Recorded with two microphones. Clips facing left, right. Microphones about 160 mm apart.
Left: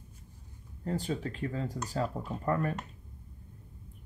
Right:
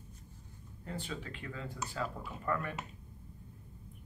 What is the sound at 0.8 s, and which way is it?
A man's voice, 40° left (ahead or behind).